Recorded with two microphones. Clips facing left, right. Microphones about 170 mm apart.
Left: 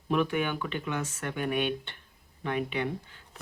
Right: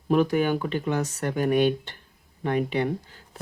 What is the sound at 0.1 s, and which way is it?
Speech, 40° right (ahead or behind).